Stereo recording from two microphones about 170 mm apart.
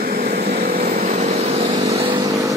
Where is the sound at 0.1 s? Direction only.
40° right (ahead or behind).